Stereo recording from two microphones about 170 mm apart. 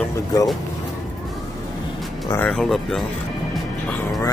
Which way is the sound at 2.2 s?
15° left (ahead or behind).